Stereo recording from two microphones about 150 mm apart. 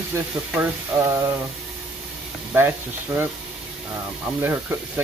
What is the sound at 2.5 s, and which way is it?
Speech, 15° right (ahead or behind).